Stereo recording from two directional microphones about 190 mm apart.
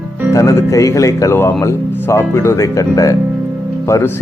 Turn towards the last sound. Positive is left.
turn(degrees=15)  # may be behind; listen again after turning